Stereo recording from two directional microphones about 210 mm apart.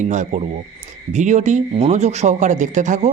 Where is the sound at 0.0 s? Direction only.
35° right (ahead or behind).